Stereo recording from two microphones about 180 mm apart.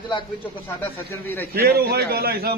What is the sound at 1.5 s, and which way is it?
A man's voice, 60° right (ahead or behind).